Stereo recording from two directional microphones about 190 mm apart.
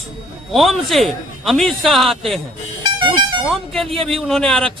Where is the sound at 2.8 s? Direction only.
25° right (ahead or behind).